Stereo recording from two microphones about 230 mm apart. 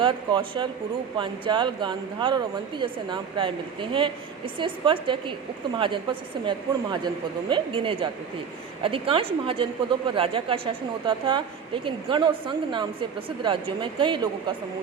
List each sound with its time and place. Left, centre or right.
0.0 s a woman's voice: right